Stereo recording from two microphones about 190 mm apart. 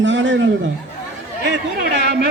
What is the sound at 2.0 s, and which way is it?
Speech, 55° right (ahead or behind).